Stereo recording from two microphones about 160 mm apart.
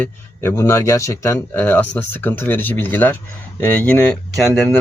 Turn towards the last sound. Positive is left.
turn(degrees=5)  # may be behind; listen again after turning